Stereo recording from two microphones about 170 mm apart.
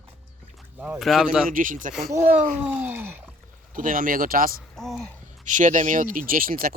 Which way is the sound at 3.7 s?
55° right (ahead or behind).